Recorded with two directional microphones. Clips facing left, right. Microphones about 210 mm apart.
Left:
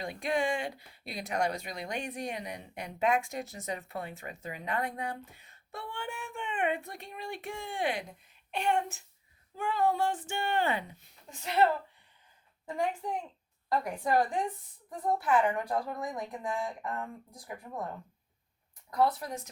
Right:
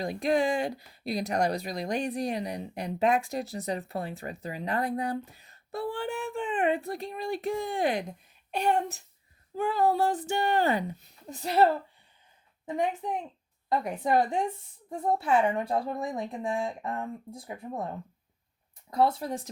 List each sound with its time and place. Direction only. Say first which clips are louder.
0.0 s speech: right 5 dB; 35° right (ahead or behind)
12.6 s a woman's voice: right 3 dB; 20° right (ahead or behind)
18.9 s a woman's voice: right 3 dB; 25° right (ahead or behind)